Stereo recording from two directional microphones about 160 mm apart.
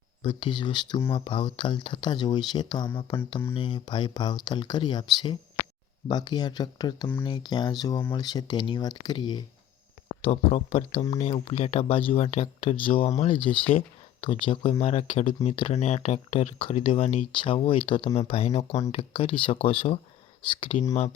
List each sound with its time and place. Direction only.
0.2 s speech: 35° left (ahead or behind)
10.2 s speech: 35° left (ahead or behind)